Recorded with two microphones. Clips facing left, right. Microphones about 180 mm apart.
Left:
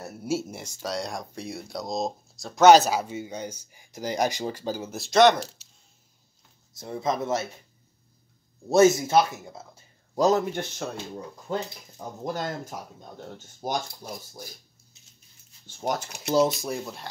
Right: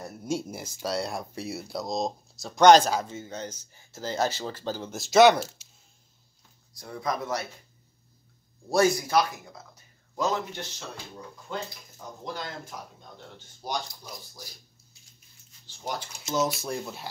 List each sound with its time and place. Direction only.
0.0 s speech: 5° left (ahead or behind)
6.7 s speech: 25° left (ahead or behind)
8.6 s a man's voice: 20° left (ahead or behind)
10.5 s speech: 55° left (ahead or behind)
11.5 s speech: 40° left (ahead or behind)
15.6 s a sound: 50° left (ahead or behind)
16.6 s speech: centre (ahead or behind)